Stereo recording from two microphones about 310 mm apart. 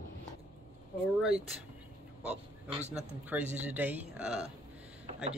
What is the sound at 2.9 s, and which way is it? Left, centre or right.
Speech, centre.